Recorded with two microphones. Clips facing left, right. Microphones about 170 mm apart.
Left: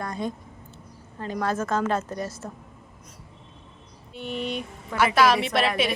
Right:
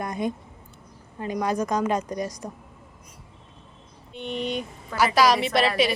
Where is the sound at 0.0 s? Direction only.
20° right (ahead or behind).